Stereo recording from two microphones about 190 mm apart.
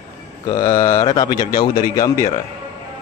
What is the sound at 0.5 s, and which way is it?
Speech, 20° left (ahead or behind).